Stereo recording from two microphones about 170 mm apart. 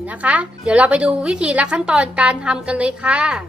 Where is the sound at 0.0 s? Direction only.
10° right (ahead or behind).